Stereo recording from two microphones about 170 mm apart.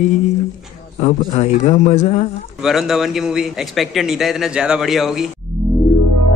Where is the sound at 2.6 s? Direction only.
Centre (ahead or behind).